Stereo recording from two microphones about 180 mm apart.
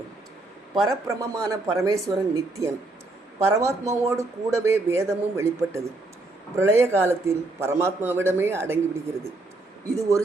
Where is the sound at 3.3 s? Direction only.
15° right (ahead or behind).